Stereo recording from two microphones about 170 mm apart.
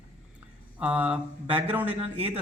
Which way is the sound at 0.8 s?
10° right (ahead or behind).